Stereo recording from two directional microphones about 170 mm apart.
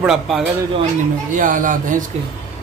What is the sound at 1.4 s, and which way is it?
Speech, 50° right (ahead or behind).